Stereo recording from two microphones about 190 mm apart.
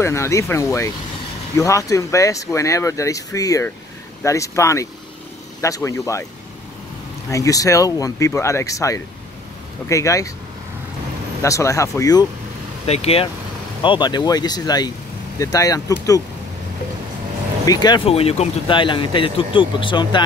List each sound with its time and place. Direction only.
0.0 s speech: 15° left (ahead or behind)
7.2 s speech: 15° left (ahead or behind)
11.4 s speech: 15° left (ahead or behind)
12.8 s speech: 35° left (ahead or behind)
17.6 s speech: 20° left (ahead or behind)